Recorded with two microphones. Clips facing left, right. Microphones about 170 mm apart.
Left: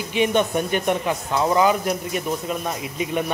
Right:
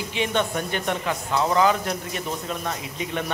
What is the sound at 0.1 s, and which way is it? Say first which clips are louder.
Speech: left 6 dB; 15° left (ahead or behind).